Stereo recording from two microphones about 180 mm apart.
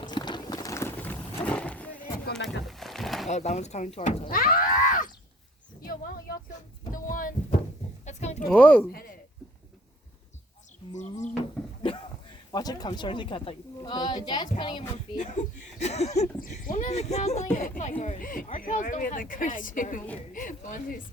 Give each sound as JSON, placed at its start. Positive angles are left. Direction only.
{"t": 0.0, "sound": "horse", "side_deg": 25}
{"t": 2.3, "sound": "a sound", "side_deg": 0}
{"t": 3.2, "sound": "speech", "side_deg": 40}
{"t": 4.3, "sound": "a sound", "side_deg": 50}
{"t": 8.4, "sound": "speech", "side_deg": 10}
{"t": 10.9, "sound": "speech", "side_deg": 40}
{"t": 11.6, "sound": "a sound", "side_deg": 5}
{"t": 12.5, "sound": "a woman's voice", "side_deg": 20}
{"t": 15.2, "sound": "speech", "side_deg": 40}